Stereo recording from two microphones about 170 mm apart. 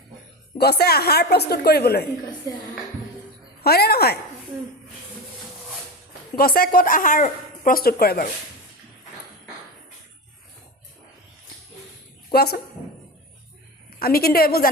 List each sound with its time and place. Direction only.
0.6 s a woman's voice: 70° left (ahead or behind)
3.6 s a woman's voice: 65° left (ahead or behind)
6.3 s speech: 60° left (ahead or behind)
12.3 s a woman's voice: 65° left (ahead or behind)
14.0 s speech: 65° left (ahead or behind)